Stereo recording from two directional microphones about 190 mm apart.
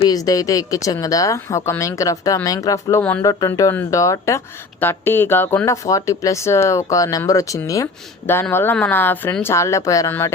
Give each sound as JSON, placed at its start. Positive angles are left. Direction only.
{"t": 0.0, "sound": "speech", "side_deg": 20}